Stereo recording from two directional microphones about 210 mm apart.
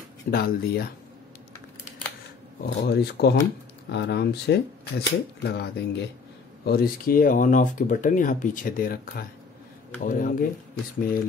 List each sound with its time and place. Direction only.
0.3 s speech: 45° left (ahead or behind)
2.6 s speech: 50° left (ahead or behind)